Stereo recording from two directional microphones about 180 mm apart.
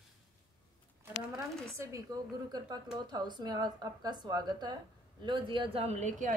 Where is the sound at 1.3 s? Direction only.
20° right (ahead or behind).